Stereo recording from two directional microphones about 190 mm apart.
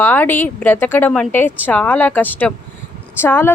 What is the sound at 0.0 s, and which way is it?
A woman's voice, 10° left (ahead or behind).